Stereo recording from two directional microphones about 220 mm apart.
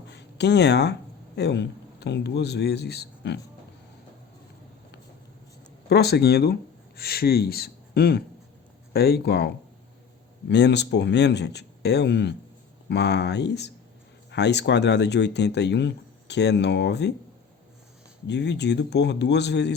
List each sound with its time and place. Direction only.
0.1 s a man's voice: 50° left (ahead or behind)
5.9 s speech: 50° left (ahead or behind)
10.5 s speech: 50° left (ahead or behind)
18.3 s speech: 50° left (ahead or behind)